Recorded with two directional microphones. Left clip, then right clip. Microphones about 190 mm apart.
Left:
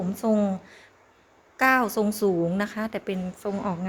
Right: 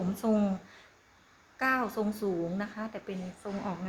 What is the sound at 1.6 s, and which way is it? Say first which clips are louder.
A woman's voice: left 8 dB; 45° left (ahead or behind).